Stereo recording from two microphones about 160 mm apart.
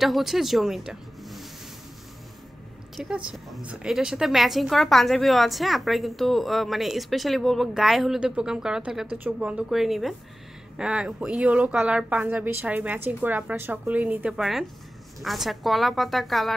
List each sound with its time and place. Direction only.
0.0 s speech: centre (ahead or behind)
3.0 s a woman's voice: 5° right (ahead or behind)